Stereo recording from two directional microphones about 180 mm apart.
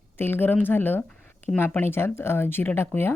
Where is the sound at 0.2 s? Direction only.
10° left (ahead or behind).